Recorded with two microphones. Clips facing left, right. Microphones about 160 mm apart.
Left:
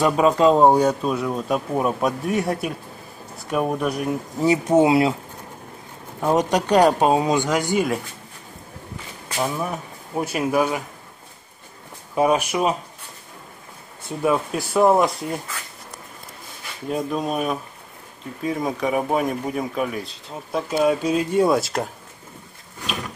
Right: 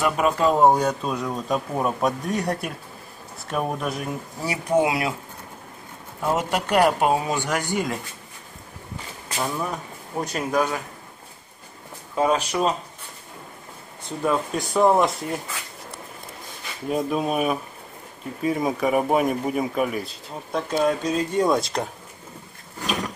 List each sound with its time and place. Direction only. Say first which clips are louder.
0.0 s speech: left 4 dB; 20° left (ahead or behind); by 4.1 s centre (ahead or behind)
4.4 s speech: left 5 dB; 25° left (ahead or behind)
6.2 s speech: left 4 dB; 20° left (ahead or behind)
9.4 s speech: left 2 dB; 10° left (ahead or behind)
12.2 s speech: left 2 dB; 10° left (ahead or behind)
14.0 s speech: left 2 dB; 10° left (ahead or behind)
16.9 s speech: right 1 dB; 5° right (ahead or behind)